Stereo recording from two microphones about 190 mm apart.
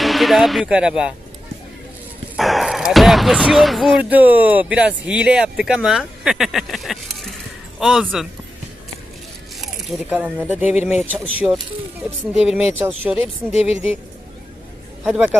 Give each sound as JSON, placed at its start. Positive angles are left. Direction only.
{"t": 0.0, "sound": "speech", "side_deg": 0}
{"t": 2.3, "sound": "speech", "side_deg": 0}
{"t": 9.6, "sound": "speech", "side_deg": -5}
{"t": 15.0, "sound": "speech", "side_deg": -5}